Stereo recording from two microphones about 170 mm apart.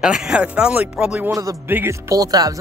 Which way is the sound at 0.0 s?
5° right (ahead or behind).